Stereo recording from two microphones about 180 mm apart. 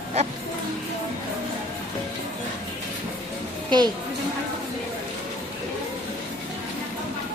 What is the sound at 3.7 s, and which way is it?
Speech, 25° right (ahead or behind).